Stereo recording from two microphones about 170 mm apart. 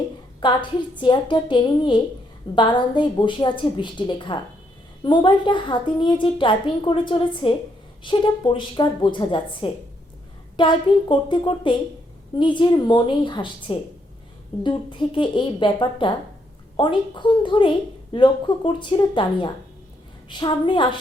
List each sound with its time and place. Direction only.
0.3 s a woman's voice: 25° left (ahead or behind)